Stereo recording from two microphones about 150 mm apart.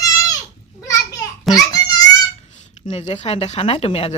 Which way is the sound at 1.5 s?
25° left (ahead or behind).